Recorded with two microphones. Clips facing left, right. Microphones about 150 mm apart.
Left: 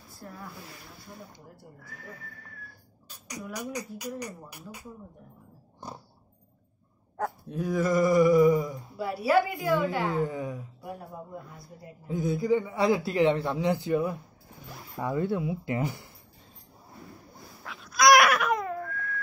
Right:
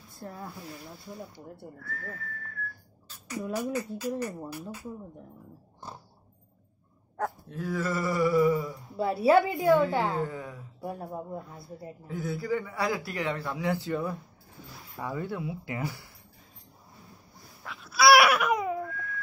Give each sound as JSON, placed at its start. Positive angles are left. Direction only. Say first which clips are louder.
{"t": 0.2, "sound": "a woman's voice", "louder": "right 3 dB", "side_deg": -25}
{"t": 1.8, "sound": "a sound", "louder": "right 4 dB", "side_deg": 15}
{"t": 7.4, "sound": "a sound", "louder": "left 7 dB", "side_deg": 15}
{"t": 8.9, "sound": "a woman's voice", "louder": "right 3 dB", "side_deg": -25}
{"t": 10.1, "sound": "a sound", "louder": "left 3 dB", "side_deg": 15}
{"t": 10.8, "sound": "a woman's voice", "louder": "right 4 dB", "side_deg": -25}
{"t": 12.1, "sound": "a man's voice", "louder": "left 5 dB", "side_deg": 20}
{"t": 17.6, "sound": "babbling", "louder": "even", "side_deg": -5}
{"t": 18.9, "sound": "baby cry", "louder": "left 2 dB", "side_deg": 60}